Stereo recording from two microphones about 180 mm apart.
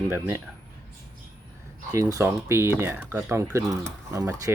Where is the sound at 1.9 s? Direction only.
20° right (ahead or behind).